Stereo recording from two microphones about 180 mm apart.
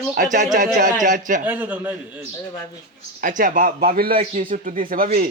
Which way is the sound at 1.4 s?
10° right (ahead or behind).